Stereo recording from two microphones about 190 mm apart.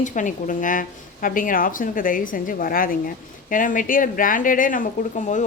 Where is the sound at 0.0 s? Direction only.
40° left (ahead or behind).